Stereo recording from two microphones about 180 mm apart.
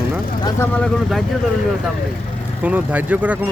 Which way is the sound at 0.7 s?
5° left (ahead or behind).